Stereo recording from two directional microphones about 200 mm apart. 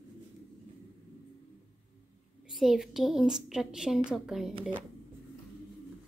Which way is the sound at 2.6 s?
Centre (ahead or behind).